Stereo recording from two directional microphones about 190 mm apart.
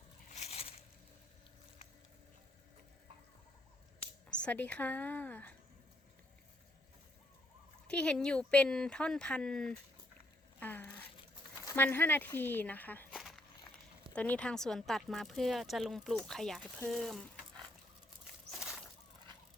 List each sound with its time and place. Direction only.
0.3 s a sound: 35° left (ahead or behind)
4.3 s speech: 5° left (ahead or behind)
7.9 s speech: 5° left (ahead or behind)